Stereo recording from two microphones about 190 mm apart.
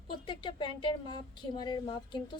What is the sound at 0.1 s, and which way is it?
Speech, 25° left (ahead or behind).